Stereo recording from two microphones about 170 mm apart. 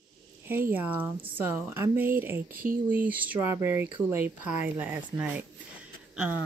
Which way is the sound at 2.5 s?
55° right (ahead or behind).